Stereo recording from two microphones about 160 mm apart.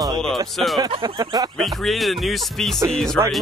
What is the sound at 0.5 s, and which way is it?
Speech, centre (ahead or behind).